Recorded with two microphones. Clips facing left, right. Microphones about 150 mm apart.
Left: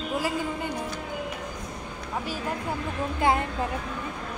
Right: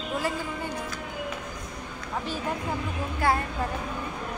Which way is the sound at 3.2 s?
20° left (ahead or behind).